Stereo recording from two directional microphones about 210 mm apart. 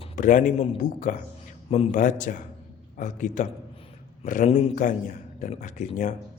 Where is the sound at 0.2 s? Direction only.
40° left (ahead or behind).